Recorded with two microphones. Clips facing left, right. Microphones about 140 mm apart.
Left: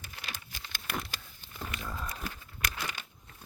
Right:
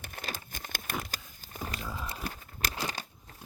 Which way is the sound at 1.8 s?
5° right (ahead or behind).